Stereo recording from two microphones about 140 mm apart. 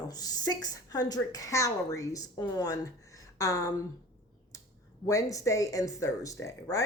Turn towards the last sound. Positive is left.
turn(degrees=25)  # may be behind; listen again after turning